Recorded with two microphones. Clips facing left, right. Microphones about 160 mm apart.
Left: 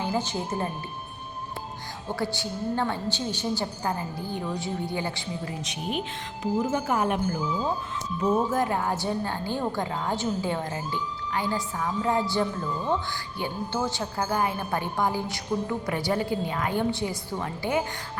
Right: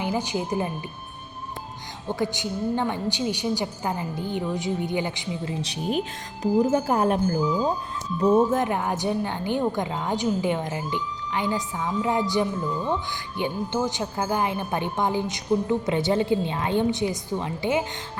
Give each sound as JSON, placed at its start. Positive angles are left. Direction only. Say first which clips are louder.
{"t": 0.0, "sound": "a woman's voice", "louder": "right 2 dB", "side_deg": -15}
{"t": 2.1, "sound": "a woman's voice", "louder": "right 3 dB", "side_deg": -20}
{"t": 6.4, "sound": "a woman's voice", "louder": "right 5 dB", "side_deg": -35}